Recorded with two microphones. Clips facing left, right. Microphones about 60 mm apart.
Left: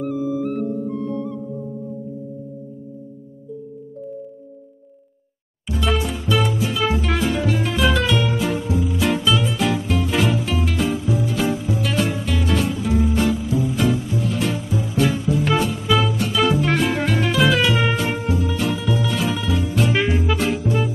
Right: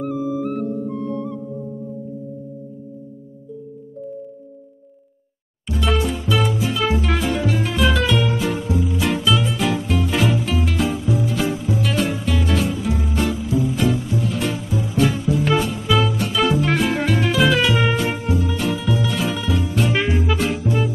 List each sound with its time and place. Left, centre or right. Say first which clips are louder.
0.7 s music: even; centre
5.7 s music: right 1 dB; centre